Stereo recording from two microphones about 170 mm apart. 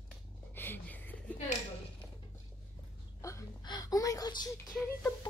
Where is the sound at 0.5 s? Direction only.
10° left (ahead or behind).